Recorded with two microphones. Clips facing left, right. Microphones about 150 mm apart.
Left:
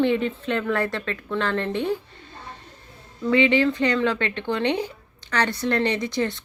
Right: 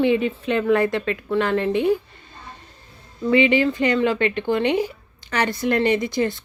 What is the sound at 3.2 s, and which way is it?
Speech, 10° right (ahead or behind).